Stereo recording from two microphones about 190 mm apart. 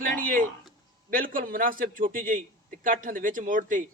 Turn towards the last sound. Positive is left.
turn(degrees=-45)  # may be behind; listen again after turning